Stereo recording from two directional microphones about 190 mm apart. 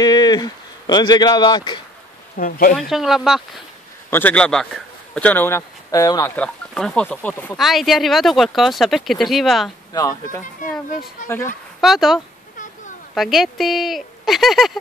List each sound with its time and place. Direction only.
0.0 s speech: 20° left (ahead or behind)
2.3 s speech: 50° left (ahead or behind)
2.9 s speech: centre (ahead or behind); by 6.3 s 20° left (ahead or behind)
6.3 s speech: 5° left (ahead or behind)
7.5 s speech: centre (ahead or behind)
9.9 s speech: 15° left (ahead or behind)
11.8 s speech: centre (ahead or behind)